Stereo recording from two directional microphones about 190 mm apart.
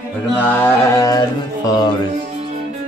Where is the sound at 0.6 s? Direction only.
15° left (ahead or behind).